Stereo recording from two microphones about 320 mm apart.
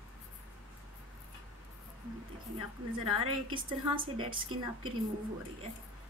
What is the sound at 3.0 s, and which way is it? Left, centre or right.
A woman's voice, centre.